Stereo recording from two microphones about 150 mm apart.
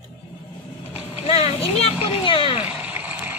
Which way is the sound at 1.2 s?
40° left (ahead or behind).